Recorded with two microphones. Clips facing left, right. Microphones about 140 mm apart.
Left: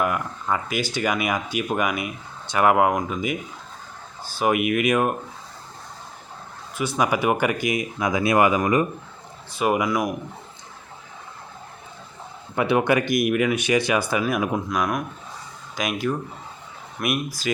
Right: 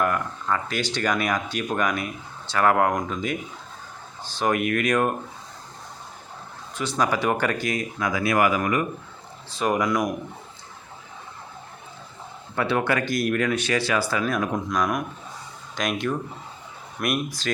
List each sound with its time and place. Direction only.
0.0 s speech: 10° left (ahead or behind)
6.7 s speech: 10° left (ahead or behind)
9.5 s speech: 10° left (ahead or behind)
12.5 s speech: 15° left (ahead or behind); by 17.1 s centre (ahead or behind)